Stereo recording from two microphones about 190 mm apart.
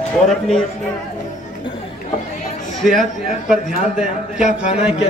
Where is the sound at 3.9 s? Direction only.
5° right (ahead or behind).